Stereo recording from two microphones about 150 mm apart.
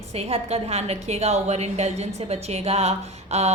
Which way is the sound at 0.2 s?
40° right (ahead or behind).